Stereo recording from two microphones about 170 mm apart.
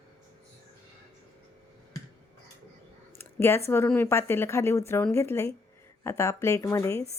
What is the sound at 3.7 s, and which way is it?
A woman's voice, 10° left (ahead or behind).